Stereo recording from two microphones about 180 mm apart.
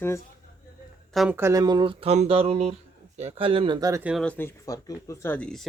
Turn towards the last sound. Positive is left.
turn(degrees=5)  # may be behind; listen again after turning